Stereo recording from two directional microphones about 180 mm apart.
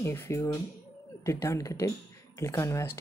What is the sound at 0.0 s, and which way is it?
Speech, 15° left (ahead or behind).